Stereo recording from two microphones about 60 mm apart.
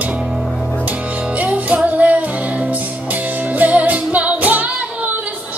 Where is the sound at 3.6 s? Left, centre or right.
Right.